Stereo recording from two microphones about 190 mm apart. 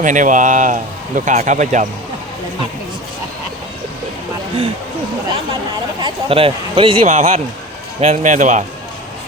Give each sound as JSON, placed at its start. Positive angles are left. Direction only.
{"t": 0.0, "sound": "speech", "side_deg": -40}
{"t": 6.0, "sound": "speech", "side_deg": -25}